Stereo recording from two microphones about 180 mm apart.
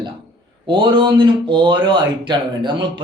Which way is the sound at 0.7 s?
25° right (ahead or behind).